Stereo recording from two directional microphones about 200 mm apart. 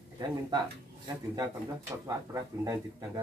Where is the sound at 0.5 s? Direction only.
20° right (ahead or behind).